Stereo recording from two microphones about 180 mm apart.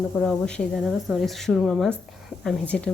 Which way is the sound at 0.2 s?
5° left (ahead or behind).